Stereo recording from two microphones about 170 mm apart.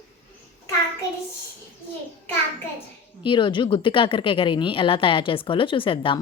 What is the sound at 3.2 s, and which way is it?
A woman's voice, 30° left (ahead or behind).